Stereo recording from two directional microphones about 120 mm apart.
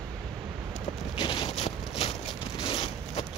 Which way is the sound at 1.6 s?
60° left (ahead or behind).